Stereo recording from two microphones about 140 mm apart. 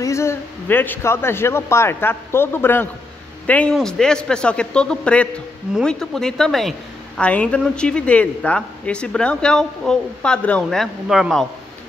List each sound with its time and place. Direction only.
0.0 s a man's voice: 20° left (ahead or behind); by 11.4 s 5° right (ahead or behind)